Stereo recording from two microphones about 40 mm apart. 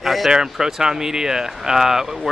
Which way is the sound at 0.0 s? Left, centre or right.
Centre.